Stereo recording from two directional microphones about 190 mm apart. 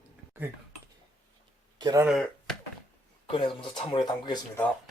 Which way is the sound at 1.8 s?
20° right (ahead or behind).